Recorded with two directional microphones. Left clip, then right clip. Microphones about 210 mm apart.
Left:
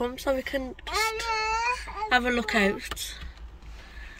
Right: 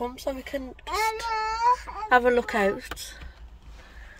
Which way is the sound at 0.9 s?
30° right (ahead or behind).